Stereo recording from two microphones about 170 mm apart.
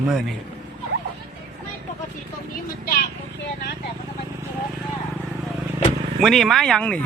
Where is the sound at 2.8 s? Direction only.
60° left (ahead or behind).